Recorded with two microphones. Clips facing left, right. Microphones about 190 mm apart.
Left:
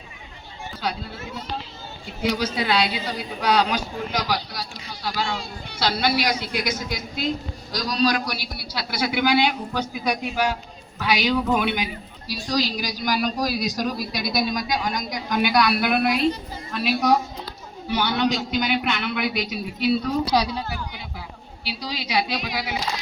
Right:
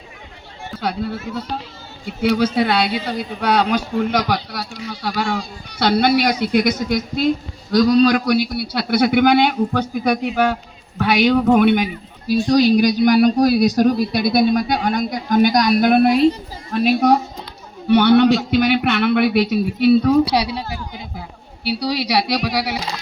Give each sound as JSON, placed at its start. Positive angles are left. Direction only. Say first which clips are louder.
{"t": 0.8, "sound": "a woman's voice", "louder": "right 7 dB", "side_deg": -55}
{"t": 15.1, "sound": "a woman's voice", "louder": "right 6 dB", "side_deg": -45}
{"t": 21.8, "sound": "speech", "louder": "right 6 dB", "side_deg": -70}